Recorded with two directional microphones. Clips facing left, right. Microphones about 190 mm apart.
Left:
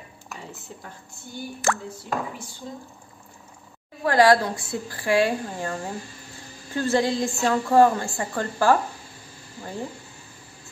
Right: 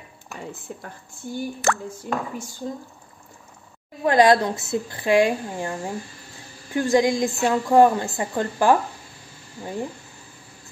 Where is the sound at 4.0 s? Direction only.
20° right (ahead or behind).